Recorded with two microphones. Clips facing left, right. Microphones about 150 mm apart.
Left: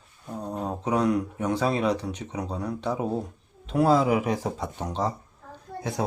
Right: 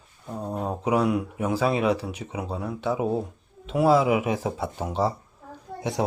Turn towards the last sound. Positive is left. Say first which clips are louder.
# right 2 dB
turn(degrees=-15)  # may be behind; listen again after turning